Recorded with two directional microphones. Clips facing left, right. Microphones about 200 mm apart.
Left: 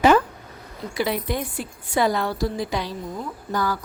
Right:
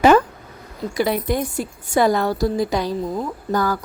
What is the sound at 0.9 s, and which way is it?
A woman's voice, 45° right (ahead or behind).